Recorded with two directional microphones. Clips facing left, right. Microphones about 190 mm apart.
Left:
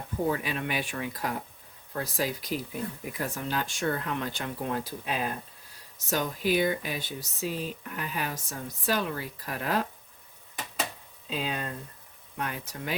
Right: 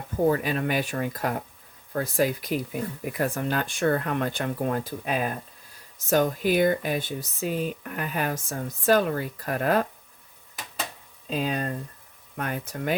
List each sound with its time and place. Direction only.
0.3 s speech: 45° right (ahead or behind)
11.3 s speech: 45° right (ahead or behind)